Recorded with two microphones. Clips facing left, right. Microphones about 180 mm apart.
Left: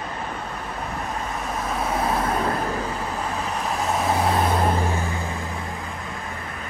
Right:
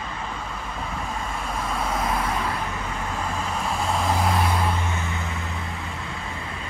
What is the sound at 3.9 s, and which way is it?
Vehicle, 20° left (ahead or behind).